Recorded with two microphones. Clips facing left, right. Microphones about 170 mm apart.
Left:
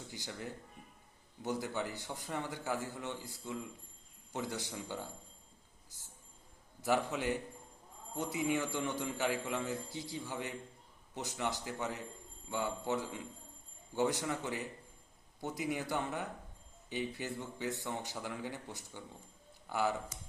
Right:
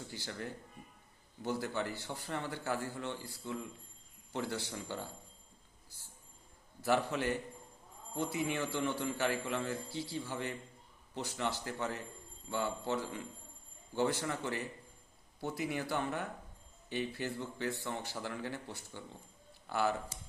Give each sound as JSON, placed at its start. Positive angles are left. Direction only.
{"t": 0.1, "sound": "a man's voice", "side_deg": 15}
{"t": 6.8, "sound": "a man's voice", "side_deg": 20}